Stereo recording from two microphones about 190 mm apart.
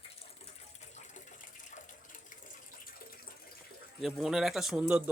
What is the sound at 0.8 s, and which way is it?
Water, 40° left (ahead or behind).